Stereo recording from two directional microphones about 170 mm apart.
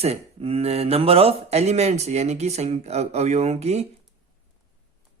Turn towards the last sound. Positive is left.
turn(degrees=-40)  # may be behind; listen again after turning